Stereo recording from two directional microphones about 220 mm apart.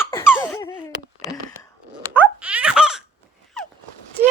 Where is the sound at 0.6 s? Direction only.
20° left (ahead or behind).